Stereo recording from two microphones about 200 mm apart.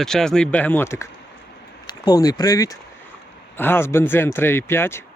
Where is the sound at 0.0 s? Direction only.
Centre (ahead or behind).